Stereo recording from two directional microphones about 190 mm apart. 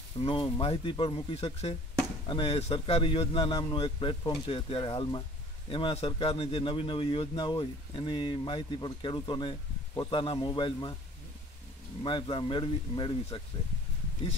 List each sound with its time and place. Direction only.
0.2 s a man's voice: 25° left (ahead or behind)
12.0 s a man's voice: 25° left (ahead or behind)